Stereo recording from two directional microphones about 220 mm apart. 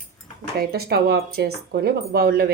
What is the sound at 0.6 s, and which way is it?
Speech, 45° right (ahead or behind).